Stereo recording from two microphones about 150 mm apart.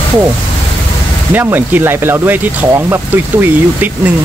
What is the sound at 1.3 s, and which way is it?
Speech, 15° right (ahead or behind).